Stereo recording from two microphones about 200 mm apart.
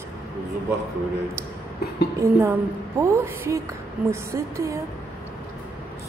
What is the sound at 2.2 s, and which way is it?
Speech, 15° right (ahead or behind).